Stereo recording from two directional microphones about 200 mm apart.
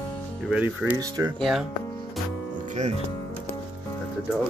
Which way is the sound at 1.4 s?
Centre (ahead or behind).